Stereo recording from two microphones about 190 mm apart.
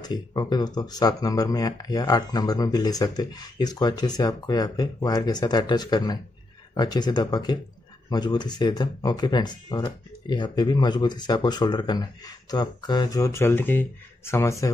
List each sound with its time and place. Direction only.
0.0 s speech: 20° left (ahead or behind)